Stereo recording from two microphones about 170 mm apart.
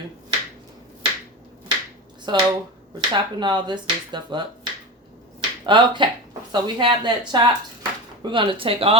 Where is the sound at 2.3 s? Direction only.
25° right (ahead or behind).